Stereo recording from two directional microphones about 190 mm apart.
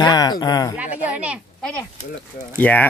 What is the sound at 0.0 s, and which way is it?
Speech, 20° left (ahead or behind).